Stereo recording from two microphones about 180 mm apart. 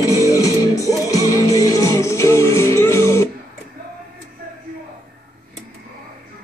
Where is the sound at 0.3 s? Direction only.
20° left (ahead or behind).